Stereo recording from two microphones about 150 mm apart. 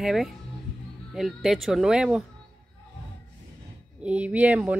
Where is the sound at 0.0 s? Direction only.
Centre (ahead or behind).